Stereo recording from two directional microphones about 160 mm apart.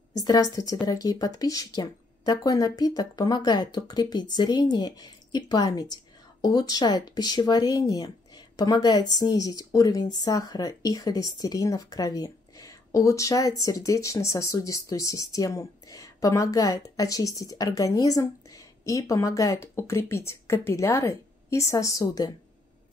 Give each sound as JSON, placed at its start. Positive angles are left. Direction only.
{"t": 0.1, "sound": "a woman's voice", "side_deg": 25}